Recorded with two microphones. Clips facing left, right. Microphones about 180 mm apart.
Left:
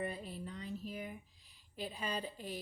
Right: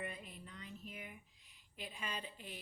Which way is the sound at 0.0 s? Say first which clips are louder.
Left 7 dB; 35° left (ahead or behind).